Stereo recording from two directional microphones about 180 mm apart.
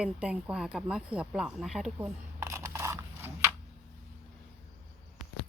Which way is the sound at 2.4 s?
15° right (ahead or behind).